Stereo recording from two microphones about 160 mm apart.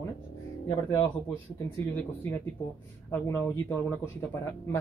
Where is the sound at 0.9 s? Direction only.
15° left (ahead or behind).